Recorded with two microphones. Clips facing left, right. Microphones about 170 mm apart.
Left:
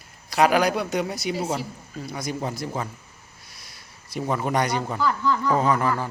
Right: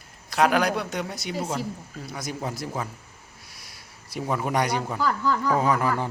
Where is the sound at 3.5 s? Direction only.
10° right (ahead or behind).